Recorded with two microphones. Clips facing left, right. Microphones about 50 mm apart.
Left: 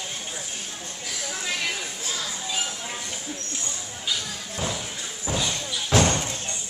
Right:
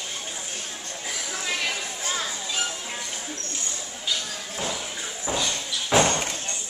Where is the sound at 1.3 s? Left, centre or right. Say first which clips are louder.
Right 1 dB; centre.